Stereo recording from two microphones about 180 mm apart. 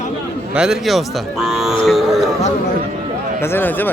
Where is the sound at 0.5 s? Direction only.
5° right (ahead or behind).